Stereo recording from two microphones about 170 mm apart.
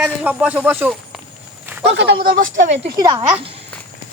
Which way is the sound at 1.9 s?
75° right (ahead or behind).